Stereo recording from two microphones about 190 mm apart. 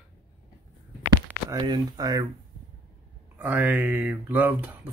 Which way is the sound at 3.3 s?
10° right (ahead or behind).